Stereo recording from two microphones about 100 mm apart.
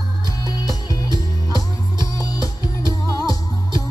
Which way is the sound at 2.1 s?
35° left (ahead or behind).